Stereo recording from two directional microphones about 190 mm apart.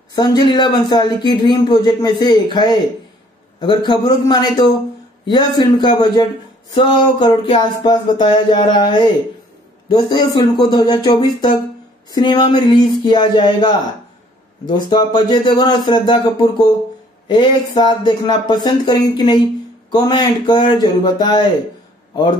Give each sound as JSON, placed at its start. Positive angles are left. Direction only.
{"t": 0.1, "sound": "speech", "side_deg": 20}